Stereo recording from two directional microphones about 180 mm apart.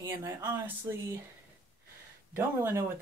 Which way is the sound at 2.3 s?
15° right (ahead or behind).